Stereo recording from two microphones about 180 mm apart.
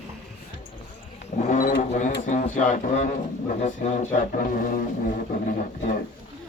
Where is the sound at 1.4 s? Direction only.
45° left (ahead or behind).